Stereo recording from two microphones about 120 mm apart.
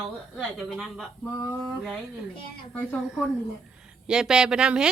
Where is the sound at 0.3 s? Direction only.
Centre (ahead or behind).